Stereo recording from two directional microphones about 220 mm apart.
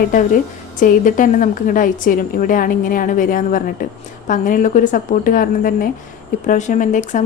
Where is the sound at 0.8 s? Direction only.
35° left (ahead or behind).